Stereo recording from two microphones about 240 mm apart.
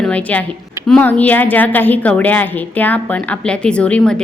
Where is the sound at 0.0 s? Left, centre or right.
Centre.